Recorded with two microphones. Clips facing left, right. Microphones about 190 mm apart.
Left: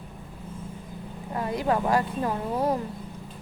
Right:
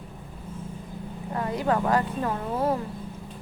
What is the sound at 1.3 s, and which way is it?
Speech, 15° left (ahead or behind).